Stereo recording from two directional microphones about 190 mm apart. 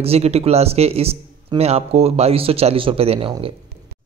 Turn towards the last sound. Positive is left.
turn(degrees=-30)  # may be behind; listen again after turning